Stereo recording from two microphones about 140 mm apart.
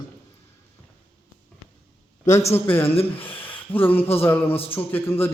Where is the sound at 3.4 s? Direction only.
15° left (ahead or behind).